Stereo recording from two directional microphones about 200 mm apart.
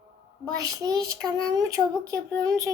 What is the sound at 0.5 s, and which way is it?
A child's voice, 15° right (ahead or behind).